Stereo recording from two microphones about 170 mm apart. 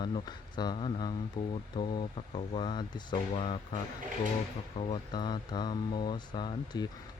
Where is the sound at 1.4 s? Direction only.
30° left (ahead or behind).